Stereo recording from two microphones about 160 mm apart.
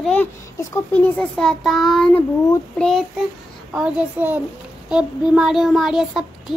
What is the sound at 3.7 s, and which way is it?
Child singing, 5° right (ahead or behind).